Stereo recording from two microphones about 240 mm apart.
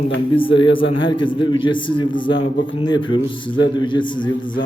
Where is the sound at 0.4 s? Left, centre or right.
Left.